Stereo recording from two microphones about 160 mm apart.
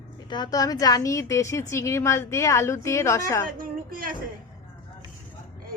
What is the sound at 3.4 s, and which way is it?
Speech, 65° right (ahead or behind).